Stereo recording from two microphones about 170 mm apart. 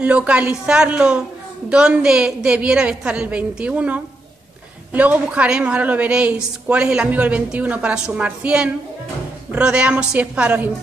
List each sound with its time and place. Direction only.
0.0 s a woman's voice: 5° right (ahead or behind)